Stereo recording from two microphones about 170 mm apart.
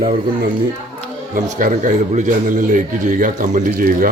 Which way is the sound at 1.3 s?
50° right (ahead or behind).